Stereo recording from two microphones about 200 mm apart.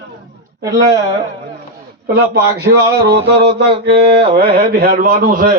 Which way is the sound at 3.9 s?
55° right (ahead or behind).